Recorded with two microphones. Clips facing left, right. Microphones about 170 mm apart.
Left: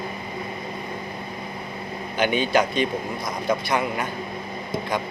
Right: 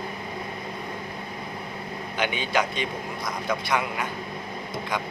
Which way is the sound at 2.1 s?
40° left (ahead or behind).